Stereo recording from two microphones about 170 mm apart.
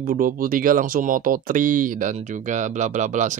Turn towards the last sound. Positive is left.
turn(degrees=-45)  # may be behind; listen again after turning